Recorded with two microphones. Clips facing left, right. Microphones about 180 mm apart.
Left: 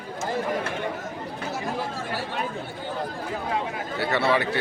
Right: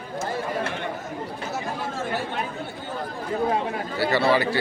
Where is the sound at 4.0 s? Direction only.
Centre (ahead or behind).